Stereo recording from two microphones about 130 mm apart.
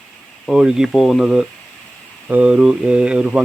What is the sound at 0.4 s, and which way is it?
Speech, 5° right (ahead or behind).